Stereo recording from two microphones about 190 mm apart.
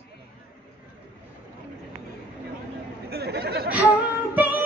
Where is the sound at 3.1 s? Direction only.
55° right (ahead or behind).